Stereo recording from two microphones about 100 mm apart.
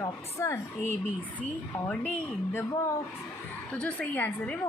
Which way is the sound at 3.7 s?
15° left (ahead or behind).